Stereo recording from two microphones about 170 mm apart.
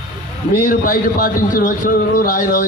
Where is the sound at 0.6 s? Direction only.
55° left (ahead or behind).